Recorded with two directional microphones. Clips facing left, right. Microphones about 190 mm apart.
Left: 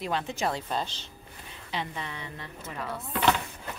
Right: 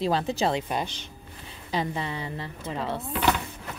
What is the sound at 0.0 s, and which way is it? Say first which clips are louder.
Speech: right 5 dB; 35° right (ahead or behind).